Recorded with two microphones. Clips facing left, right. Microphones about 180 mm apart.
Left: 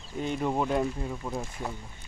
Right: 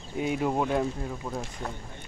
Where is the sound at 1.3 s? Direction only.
10° left (ahead or behind).